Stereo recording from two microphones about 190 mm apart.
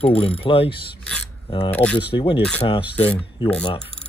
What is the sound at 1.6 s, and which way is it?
Speech, 10° left (ahead or behind).